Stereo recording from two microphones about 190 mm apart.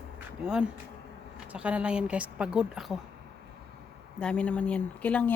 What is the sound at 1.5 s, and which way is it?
Speech, 5° right (ahead or behind).